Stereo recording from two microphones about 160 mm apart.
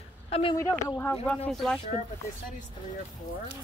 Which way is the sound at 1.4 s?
Centre (ahead or behind).